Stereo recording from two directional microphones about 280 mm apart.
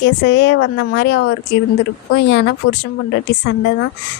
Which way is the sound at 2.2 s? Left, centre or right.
Left.